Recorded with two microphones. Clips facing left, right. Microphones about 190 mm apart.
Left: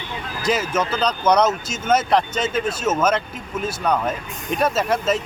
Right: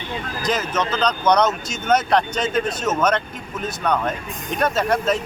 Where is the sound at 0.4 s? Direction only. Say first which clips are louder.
Left 2 dB; 5° left (ahead or behind).